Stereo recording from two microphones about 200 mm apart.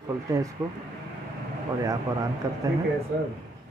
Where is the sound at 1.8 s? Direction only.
15° right (ahead or behind).